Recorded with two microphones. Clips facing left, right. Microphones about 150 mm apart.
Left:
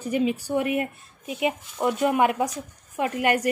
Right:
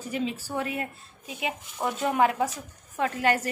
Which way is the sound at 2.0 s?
15° left (ahead or behind).